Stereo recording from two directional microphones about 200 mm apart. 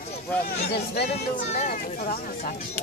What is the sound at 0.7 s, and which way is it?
Speech, 50° left (ahead or behind).